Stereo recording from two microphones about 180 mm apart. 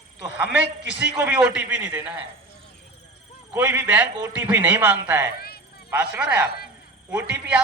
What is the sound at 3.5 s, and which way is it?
A man's voice, 10° right (ahead or behind).